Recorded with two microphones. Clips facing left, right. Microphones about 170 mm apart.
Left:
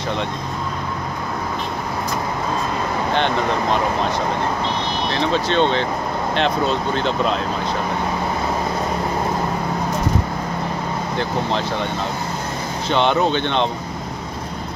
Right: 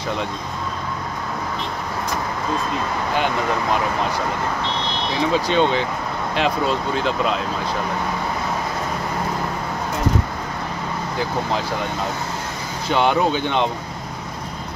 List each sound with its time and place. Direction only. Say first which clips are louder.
5.1 s speech: right 1 dB; 10° right (ahead or behind)
12.9 s speech: even; 5° right (ahead or behind)